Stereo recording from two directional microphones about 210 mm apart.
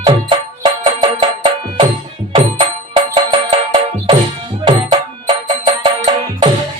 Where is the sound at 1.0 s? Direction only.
20° right (ahead or behind).